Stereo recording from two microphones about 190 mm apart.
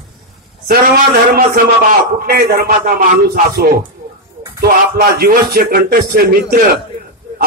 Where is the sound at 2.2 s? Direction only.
55° right (ahead or behind).